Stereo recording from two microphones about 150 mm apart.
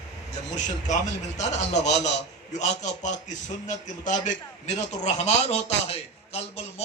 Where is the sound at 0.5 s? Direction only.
55° left (ahead or behind).